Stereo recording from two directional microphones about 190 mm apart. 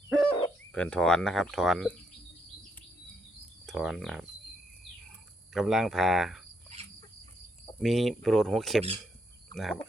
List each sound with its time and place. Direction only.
0.1 s hoot: 5° left (ahead or behind)
0.7 s speech: 5° left (ahead or behind)
3.7 s speech: centre (ahead or behind)
5.5 s speech: centre (ahead or behind)
7.8 s speech: centre (ahead or behind)